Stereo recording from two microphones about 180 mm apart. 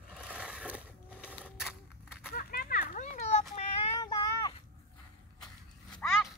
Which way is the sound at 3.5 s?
30° left (ahead or behind).